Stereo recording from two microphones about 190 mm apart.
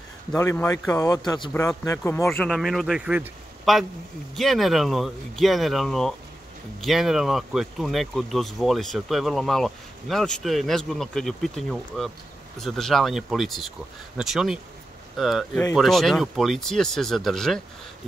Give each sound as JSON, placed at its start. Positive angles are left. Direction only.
{"t": 0.4, "sound": "speech", "side_deg": 15}
{"t": 2.2, "sound": "speech", "side_deg": 0}